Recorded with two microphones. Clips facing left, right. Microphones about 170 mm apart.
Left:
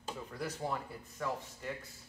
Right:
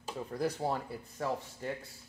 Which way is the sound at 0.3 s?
35° right (ahead or behind).